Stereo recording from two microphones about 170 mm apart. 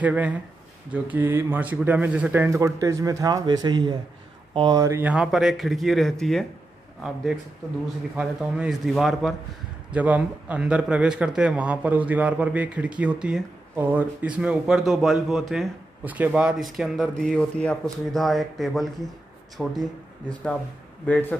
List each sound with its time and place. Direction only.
0.0 s speech: 10° right (ahead or behind)
8.2 s speech: 5° right (ahead or behind)
21.0 s speech: 10° left (ahead or behind)